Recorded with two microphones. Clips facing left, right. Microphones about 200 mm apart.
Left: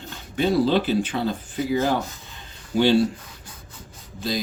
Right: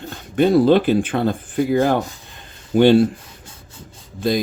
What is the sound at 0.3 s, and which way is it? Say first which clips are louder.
Speech: right 6 dB; 55° right (ahead or behind).